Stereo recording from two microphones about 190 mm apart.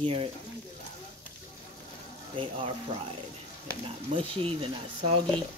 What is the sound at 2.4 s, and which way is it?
Speech, 30° right (ahead or behind).